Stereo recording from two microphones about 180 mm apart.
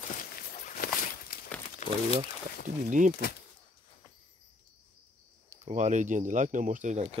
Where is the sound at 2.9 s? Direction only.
45° right (ahead or behind).